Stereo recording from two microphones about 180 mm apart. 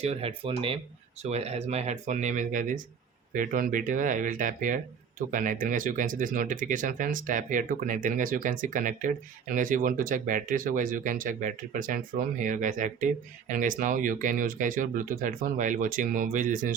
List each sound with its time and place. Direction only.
0.0 s speech: 35° right (ahead or behind)